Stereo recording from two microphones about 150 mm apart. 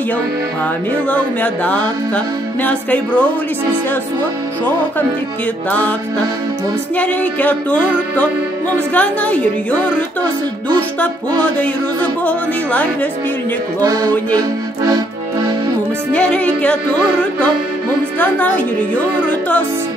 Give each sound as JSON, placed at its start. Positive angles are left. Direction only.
{"t": 1.1, "sound": "music", "side_deg": 10}
{"t": 5.7, "sound": "music", "side_deg": 10}
{"t": 7.0, "sound": "music", "side_deg": 10}
{"t": 13.8, "sound": "music", "side_deg": -25}
{"t": 16.1, "sound": "music", "side_deg": 5}
{"t": 18.2, "sound": "music", "side_deg": 10}